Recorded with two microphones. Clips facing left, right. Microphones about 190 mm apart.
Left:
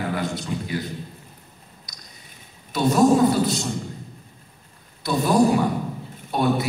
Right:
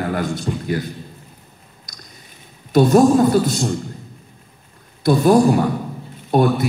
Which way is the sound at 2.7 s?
45° right (ahead or behind).